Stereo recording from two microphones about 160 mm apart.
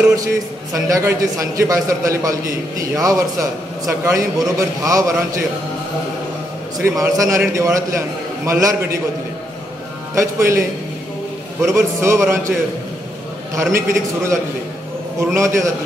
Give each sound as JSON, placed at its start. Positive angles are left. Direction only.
{"t": 0.1, "sound": "a man's voice", "side_deg": -20}
{"t": 6.8, "sound": "a man's voice", "side_deg": -20}
{"t": 10.1, "sound": "a man's voice", "side_deg": -15}
{"t": 11.6, "sound": "a man's voice", "side_deg": -20}
{"t": 13.6, "sound": "a man's voice", "side_deg": -15}